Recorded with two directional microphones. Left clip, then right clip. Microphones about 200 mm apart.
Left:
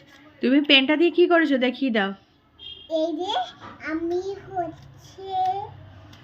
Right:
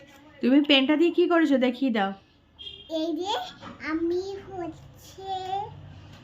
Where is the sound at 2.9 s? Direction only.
15° right (ahead or behind).